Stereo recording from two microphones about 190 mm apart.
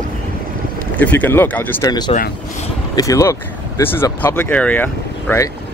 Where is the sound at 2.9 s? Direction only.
15° left (ahead or behind).